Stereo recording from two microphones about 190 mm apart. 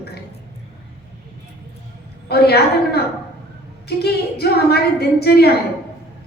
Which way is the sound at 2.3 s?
55° left (ahead or behind).